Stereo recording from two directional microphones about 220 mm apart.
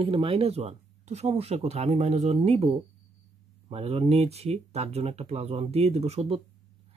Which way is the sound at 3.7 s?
25° right (ahead or behind).